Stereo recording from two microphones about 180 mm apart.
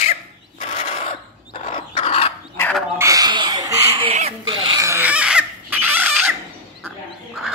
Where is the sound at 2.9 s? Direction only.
20° right (ahead or behind).